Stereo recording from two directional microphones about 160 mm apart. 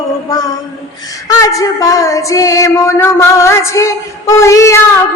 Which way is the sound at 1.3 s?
20° left (ahead or behind).